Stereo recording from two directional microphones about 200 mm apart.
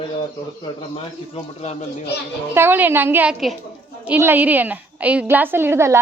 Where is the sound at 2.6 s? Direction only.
10° right (ahead or behind).